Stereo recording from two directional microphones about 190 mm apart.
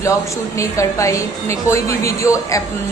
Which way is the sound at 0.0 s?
15° left (ahead or behind).